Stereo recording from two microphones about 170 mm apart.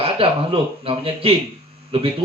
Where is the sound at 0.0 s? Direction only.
35° right (ahead or behind).